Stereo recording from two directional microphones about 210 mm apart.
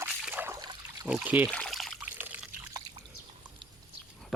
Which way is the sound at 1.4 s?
5° left (ahead or behind).